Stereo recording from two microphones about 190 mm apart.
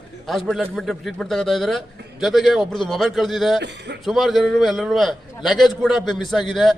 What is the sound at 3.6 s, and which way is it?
Speech, 65° right (ahead or behind).